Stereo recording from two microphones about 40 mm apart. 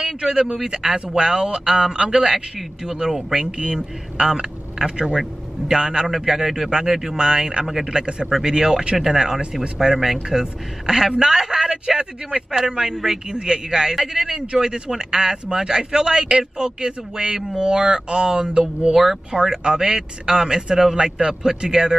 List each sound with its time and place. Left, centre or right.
0.0 s speech: centre
7.6 s speech: centre
7.9 s speech: right
12.0 s speech: right